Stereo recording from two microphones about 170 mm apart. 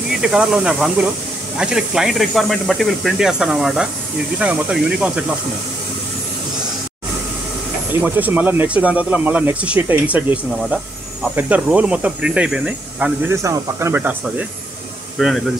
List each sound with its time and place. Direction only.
0.2 s speech: 5° right (ahead or behind)
7.9 s speech: 10° right (ahead or behind)
11.3 s speech: 10° right (ahead or behind)
13.4 s speech: 15° right (ahead or behind)
15.1 s speech: centre (ahead or behind)